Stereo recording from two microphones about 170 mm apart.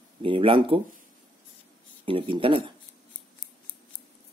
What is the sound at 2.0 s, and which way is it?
Speech, 30° right (ahead or behind).